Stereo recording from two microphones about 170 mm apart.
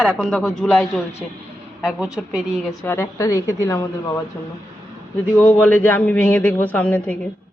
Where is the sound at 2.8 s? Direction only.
15° left (ahead or behind).